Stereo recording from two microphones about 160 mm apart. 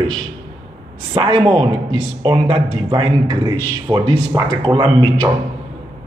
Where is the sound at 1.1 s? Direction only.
30° right (ahead or behind).